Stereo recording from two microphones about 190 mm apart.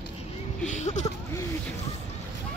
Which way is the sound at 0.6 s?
40° left (ahead or behind).